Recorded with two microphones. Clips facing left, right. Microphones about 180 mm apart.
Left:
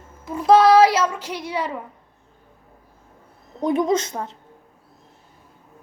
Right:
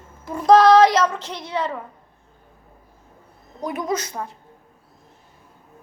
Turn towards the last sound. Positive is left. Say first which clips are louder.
# left 4 dB
turn(degrees=20)  # may be behind; listen again after turning